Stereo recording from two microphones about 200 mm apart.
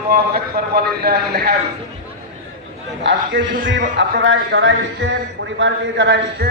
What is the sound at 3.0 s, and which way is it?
A man's voice, 65° right (ahead or behind).